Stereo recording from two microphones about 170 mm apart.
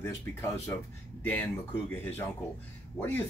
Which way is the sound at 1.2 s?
10° left (ahead or behind).